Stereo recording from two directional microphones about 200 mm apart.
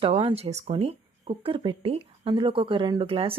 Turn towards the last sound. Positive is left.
turn(degrees=-25)  # may be behind; listen again after turning